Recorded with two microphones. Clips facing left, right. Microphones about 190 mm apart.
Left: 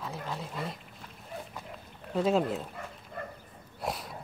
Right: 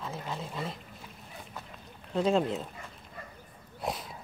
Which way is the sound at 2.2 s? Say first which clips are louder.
Even; 5° left (ahead or behind).